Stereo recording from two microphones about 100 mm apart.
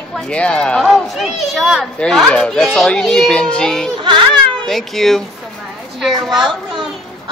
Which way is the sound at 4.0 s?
50° right (ahead or behind).